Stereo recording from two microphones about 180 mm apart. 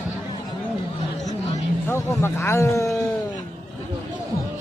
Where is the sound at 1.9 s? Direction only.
15° left (ahead or behind).